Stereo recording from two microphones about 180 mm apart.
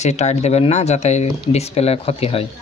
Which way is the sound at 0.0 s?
40° left (ahead or behind).